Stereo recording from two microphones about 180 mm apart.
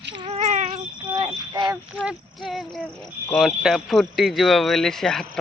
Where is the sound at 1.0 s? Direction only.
25° right (ahead or behind).